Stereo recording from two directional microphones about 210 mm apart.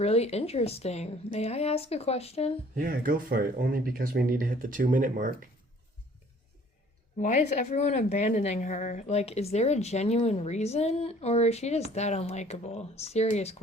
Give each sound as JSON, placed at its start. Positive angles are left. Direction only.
{"t": 0.0, "sound": "a woman's voice", "side_deg": 30}
{"t": 2.7, "sound": "speech", "side_deg": -45}
{"t": 7.2, "sound": "a woman's voice", "side_deg": 35}